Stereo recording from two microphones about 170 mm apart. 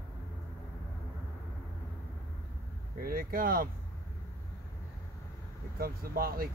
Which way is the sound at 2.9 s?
60° right (ahead or behind).